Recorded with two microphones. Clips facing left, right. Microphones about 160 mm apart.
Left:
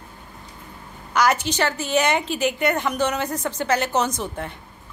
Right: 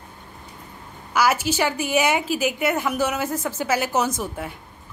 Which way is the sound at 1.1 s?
5° right (ahead or behind).